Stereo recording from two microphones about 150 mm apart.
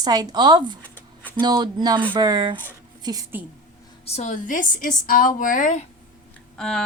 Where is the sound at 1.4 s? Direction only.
30° right (ahead or behind).